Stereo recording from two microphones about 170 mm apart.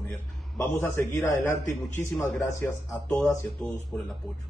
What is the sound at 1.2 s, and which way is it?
A man's voice, 15° left (ahead or behind).